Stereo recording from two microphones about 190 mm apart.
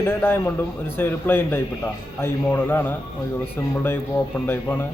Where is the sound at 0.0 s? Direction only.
10° left (ahead or behind).